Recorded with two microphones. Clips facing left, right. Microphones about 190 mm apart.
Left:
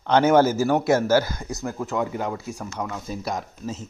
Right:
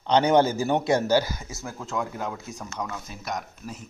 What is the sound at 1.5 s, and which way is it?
Speech, 15° left (ahead or behind).